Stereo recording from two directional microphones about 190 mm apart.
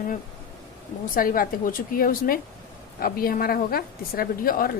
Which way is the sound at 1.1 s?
45° left (ahead or behind).